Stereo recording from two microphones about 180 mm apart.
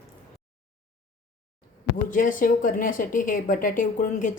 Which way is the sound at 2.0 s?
45° left (ahead or behind).